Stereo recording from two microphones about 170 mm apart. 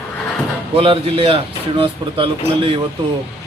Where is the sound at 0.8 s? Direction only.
30° right (ahead or behind).